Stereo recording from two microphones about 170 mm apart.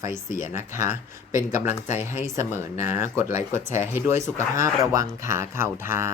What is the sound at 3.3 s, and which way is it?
Speech, 45° left (ahead or behind).